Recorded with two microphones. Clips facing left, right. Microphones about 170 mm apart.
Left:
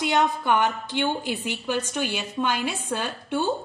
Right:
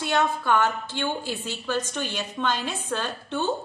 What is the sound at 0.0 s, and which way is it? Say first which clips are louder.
A woman's voice: left 2 dB; 15° left (ahead or behind).